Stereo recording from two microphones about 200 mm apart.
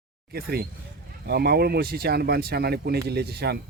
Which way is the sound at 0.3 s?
50° right (ahead or behind).